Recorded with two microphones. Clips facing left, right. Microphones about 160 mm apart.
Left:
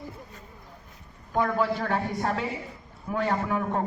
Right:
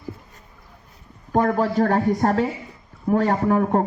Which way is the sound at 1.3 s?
45° right (ahead or behind).